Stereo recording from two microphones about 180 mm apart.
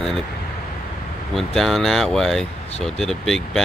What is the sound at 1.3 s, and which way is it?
Speech, centre (ahead or behind).